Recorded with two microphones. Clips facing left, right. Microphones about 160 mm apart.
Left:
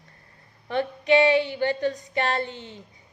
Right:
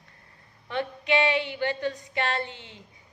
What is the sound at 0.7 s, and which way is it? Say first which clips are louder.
A woman's voice: left 5 dB; 40° left (ahead or behind).